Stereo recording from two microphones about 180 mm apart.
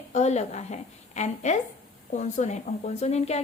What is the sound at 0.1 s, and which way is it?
A woman's voice, 40° left (ahead or behind).